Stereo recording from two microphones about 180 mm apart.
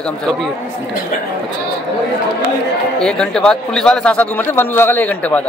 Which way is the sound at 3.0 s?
5° left (ahead or behind).